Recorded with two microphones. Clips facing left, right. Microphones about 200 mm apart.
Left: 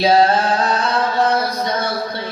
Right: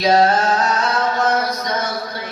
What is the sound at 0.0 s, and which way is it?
Chant, 30° left (ahead or behind).